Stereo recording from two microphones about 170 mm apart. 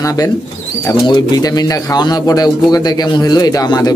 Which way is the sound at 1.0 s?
25° left (ahead or behind).